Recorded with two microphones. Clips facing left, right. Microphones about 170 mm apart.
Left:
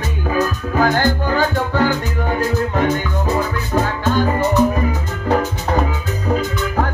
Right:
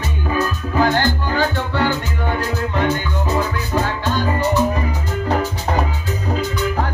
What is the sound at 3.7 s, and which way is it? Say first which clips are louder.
Music: left 4 dB; 45° left (ahead or behind).